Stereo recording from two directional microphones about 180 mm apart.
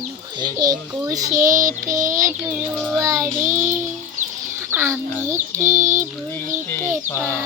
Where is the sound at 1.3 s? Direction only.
45° right (ahead or behind).